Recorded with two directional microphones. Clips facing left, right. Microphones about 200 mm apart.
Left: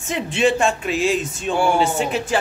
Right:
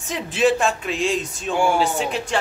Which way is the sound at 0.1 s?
Centre (ahead or behind).